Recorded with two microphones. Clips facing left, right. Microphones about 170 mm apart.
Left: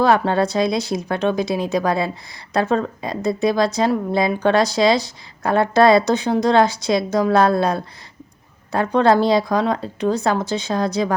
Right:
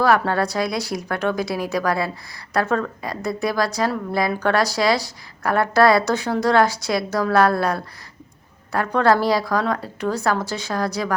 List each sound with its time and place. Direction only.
0.0 s a woman's voice: 20° left (ahead or behind)